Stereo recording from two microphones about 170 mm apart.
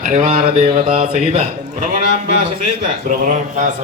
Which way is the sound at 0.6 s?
35° right (ahead or behind).